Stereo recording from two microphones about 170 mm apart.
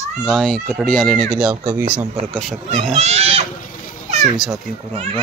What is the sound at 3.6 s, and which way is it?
Children playing, 55° left (ahead or behind).